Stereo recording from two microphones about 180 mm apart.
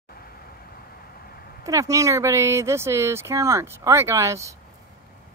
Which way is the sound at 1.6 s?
15° right (ahead or behind).